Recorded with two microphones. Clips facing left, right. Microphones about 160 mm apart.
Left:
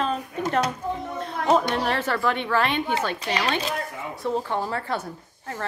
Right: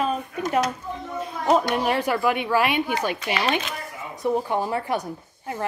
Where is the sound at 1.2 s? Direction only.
10° right (ahead or behind).